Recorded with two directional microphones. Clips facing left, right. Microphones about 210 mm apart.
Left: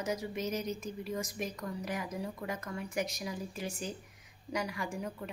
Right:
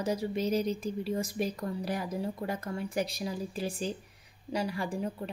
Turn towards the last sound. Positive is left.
turn(degrees=-30)  # may be behind; listen again after turning